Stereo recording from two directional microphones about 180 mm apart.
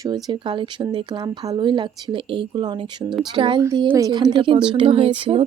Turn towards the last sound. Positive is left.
turn(degrees=-30)  # may be behind; listen again after turning